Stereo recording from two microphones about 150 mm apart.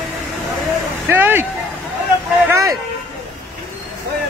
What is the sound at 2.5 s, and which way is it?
Speech, 20° right (ahead or behind).